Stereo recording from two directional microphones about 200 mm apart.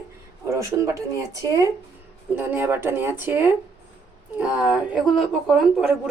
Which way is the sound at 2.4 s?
10° right (ahead or behind).